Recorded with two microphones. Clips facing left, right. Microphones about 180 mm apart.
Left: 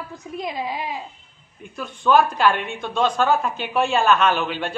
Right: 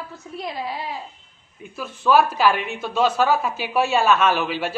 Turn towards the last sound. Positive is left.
turn(degrees=-5)  # may be behind; listen again after turning